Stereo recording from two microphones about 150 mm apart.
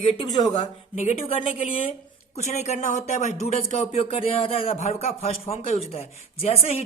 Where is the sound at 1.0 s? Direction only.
45° left (ahead or behind).